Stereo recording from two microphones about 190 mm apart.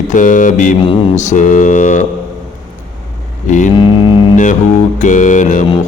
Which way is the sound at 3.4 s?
40° left (ahead or behind).